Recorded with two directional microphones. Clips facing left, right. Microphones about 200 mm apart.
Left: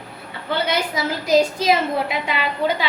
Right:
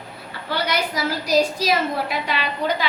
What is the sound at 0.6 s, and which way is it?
A woman's voice, 25° left (ahead or behind).